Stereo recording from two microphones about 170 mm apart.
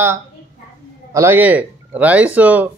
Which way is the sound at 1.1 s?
15° right (ahead or behind).